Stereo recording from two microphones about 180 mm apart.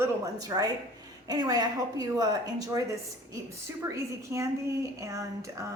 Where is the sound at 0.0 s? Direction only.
20° right (ahead or behind).